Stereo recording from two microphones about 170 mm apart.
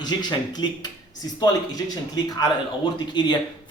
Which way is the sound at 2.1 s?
25° left (ahead or behind).